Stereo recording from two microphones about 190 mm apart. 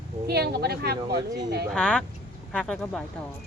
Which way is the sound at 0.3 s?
55° right (ahead or behind).